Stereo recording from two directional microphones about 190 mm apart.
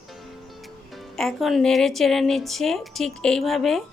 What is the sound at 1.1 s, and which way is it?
Speech, centre (ahead or behind).